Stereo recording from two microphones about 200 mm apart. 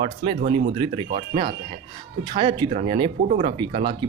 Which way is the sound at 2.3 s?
25° right (ahead or behind).